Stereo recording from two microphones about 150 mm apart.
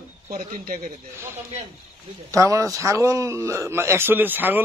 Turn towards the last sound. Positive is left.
turn(degrees=-10)  # may be behind; listen again after turning